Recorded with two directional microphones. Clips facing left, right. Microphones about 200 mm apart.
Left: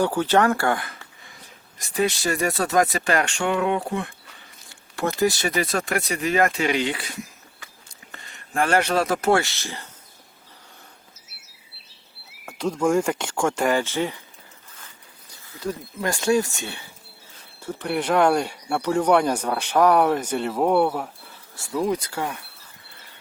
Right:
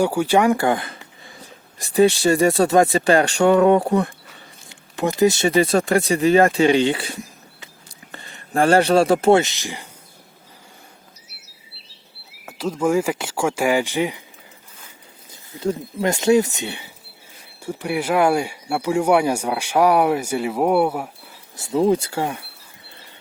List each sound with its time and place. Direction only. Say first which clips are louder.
0.0 s speech: right 3 dB; 10° right (ahead or behind); by 4.1 s 40° right (ahead or behind)
4.7 s speech: right 3 dB; 20° right (ahead or behind)
12.5 s speech: right 1 dB; 5° right (ahead or behind)
15.3 s speech: right 6 dB; 25° right (ahead or behind)
21.5 s speech: right 6 dB; 20° right (ahead or behind)